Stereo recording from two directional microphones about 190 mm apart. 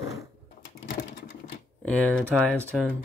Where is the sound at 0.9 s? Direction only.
60° left (ahead or behind).